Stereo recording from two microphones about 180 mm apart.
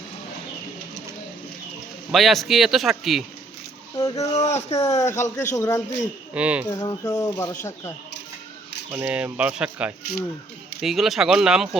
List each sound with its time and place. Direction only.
2.1 s speech: centre (ahead or behind)
3.9 s speech: 20° left (ahead or behind)
4.2 s speech: 35° left (ahead or behind)
4.9 s speech: 15° left (ahead or behind)
6.3 s speech: 5° right (ahead or behind)
6.7 s speech: 15° left (ahead or behind)
8.9 s speech: 10° right (ahead or behind)